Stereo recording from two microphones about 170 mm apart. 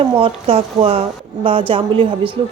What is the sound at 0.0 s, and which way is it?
Speech, 35° right (ahead or behind).